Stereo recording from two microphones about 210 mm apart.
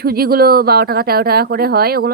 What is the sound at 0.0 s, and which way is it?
Speech, 45° right (ahead or behind).